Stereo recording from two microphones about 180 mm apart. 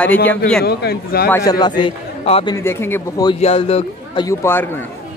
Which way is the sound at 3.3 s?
35° left (ahead or behind).